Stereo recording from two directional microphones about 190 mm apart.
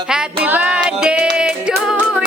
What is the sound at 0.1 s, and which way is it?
Music, 5° right (ahead or behind).